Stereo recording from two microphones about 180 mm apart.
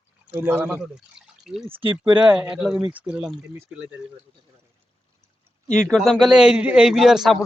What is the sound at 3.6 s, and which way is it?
Speech, 5° right (ahead or behind).